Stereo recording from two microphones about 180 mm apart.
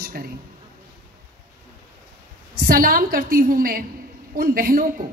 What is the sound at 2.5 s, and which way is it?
A woman's voice, 55° right (ahead or behind).